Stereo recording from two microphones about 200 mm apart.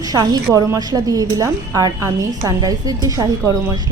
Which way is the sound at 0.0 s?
20° right (ahead or behind).